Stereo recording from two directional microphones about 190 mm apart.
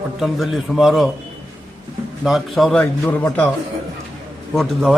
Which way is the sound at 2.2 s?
Centre (ahead or behind).